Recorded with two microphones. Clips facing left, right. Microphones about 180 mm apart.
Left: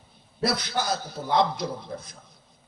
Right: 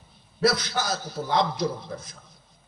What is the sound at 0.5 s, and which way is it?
A man's voice, 55° left (ahead or behind).